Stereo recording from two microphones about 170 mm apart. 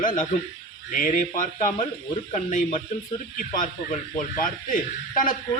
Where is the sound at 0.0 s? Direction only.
55° left (ahead or behind).